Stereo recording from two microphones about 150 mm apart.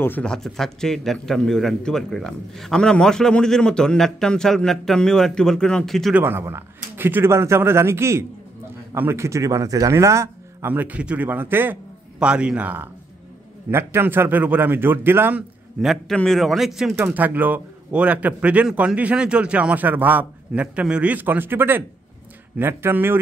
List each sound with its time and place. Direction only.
0.0 s a man's voice: 10° left (ahead or behind)
6.1 s a man's voice: 15° right (ahead or behind)
15.8 s a man's voice: centre (ahead or behind); by 23.1 s 15° right (ahead or behind)